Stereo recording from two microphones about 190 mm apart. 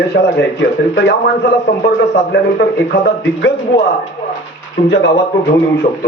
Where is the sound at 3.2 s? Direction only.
70° left (ahead or behind).